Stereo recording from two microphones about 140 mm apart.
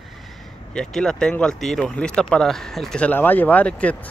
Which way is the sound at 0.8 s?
5° left (ahead or behind).